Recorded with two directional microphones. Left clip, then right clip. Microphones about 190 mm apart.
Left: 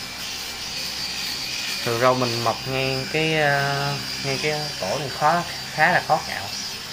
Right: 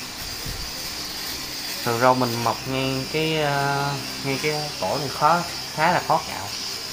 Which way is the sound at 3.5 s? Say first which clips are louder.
Even; centre (ahead or behind).